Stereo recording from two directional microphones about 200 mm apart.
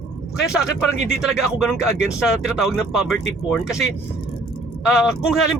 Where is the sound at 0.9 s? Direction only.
35° right (ahead or behind).